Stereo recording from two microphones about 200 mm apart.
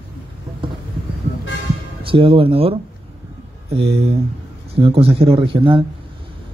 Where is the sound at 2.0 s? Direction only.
25° right (ahead or behind).